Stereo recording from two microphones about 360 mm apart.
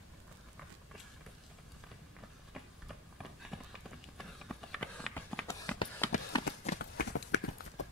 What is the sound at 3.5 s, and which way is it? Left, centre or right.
Run, centre.